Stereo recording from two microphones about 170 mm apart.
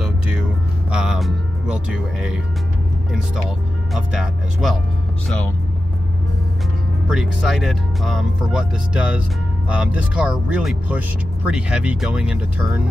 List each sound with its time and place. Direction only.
0.0 s music: 5° right (ahead or behind)
0.9 s speech: 5° right (ahead or behind)
3.9 s speech: centre (ahead or behind)
7.1 s speech: centre (ahead or behind)